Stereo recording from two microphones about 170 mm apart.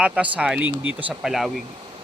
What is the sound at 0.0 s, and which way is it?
Speech, 5° right (ahead or behind).